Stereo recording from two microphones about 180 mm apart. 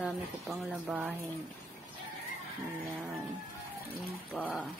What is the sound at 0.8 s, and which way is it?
Speech, 10° right (ahead or behind).